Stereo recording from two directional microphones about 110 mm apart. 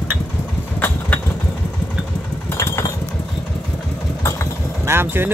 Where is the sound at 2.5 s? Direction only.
25° left (ahead or behind).